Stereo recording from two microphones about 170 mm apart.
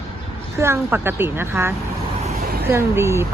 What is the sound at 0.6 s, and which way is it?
Speech, 15° right (ahead or behind).